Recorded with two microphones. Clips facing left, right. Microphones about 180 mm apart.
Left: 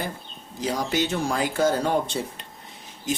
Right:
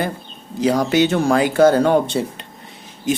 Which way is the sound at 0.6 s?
75° right (ahead or behind).